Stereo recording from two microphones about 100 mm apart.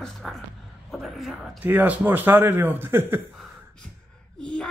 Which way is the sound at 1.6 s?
20° right (ahead or behind).